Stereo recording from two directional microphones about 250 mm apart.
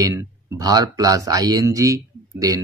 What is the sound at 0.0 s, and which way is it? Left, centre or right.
Speech, centre.